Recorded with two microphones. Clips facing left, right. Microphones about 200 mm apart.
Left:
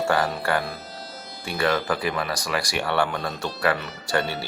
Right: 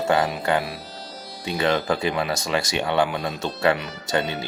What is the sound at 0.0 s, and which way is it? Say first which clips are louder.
Speech: right 2 dB; 20° right (ahead or behind).